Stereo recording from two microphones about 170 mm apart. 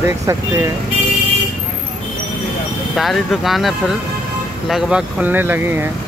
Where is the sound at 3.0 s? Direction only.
Centre (ahead or behind).